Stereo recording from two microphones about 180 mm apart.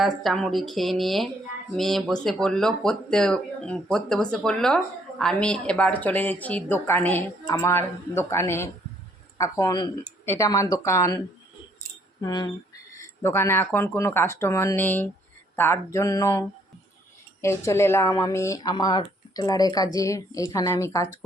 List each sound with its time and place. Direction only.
0.0 s speech: centre (ahead or behind); by 11.2 s 15° left (ahead or behind)
12.2 s speech: 20° left (ahead or behind)